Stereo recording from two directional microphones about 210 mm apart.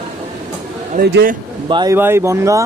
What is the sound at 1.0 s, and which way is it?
Speech, 50° right (ahead or behind).